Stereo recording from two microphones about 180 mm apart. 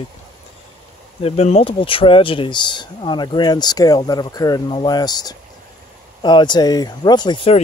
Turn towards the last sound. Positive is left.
turn(degrees=30)  # may be behind; listen again after turning